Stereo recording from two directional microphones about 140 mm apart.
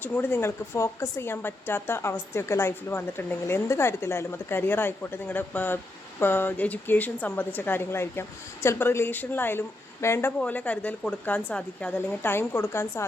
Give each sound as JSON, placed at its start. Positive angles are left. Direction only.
{"t": 0.0, "sound": "speech", "side_deg": 15}